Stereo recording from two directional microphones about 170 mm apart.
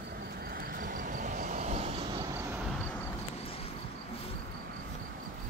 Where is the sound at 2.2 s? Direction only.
20° right (ahead or behind).